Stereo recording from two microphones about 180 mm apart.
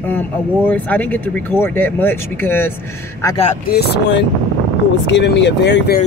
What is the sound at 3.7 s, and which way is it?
Speech, 65° left (ahead or behind).